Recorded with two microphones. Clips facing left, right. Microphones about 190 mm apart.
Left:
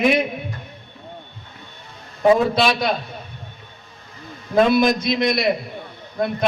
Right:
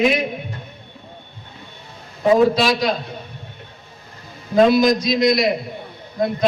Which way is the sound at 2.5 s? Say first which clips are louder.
Right 1 dB; 60° left (ahead or behind).